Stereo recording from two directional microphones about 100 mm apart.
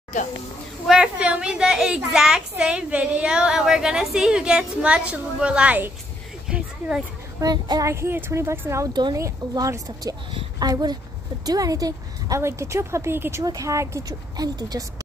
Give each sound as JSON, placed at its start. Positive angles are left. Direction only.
{"t": 0.8, "sound": "a woman's voice", "side_deg": -10}
{"t": 6.4, "sound": "a sound", "side_deg": -10}
{"t": 7.3, "sound": "a woman's voice", "side_deg": -40}
{"t": 7.9, "sound": "a woman's voice", "side_deg": -25}
{"t": 13.4, "sound": "a woman's voice", "side_deg": -35}